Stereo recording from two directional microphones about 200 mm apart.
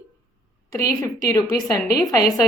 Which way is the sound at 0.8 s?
15° left (ahead or behind).